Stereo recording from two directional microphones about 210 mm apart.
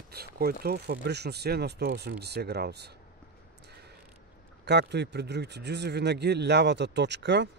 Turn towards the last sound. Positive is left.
turn(degrees=-55)  # may be behind; listen again after turning